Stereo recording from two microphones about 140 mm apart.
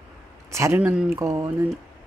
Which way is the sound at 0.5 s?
20° right (ahead or behind).